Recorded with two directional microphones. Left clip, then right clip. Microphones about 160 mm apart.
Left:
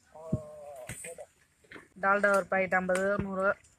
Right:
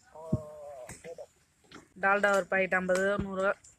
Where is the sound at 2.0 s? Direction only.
20° right (ahead or behind).